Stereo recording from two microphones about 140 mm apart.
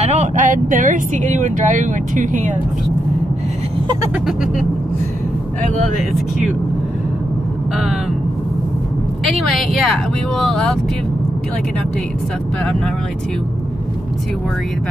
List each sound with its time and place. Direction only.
0.0 s speech: 55° right (ahead or behind)
9.2 s speech: centre (ahead or behind)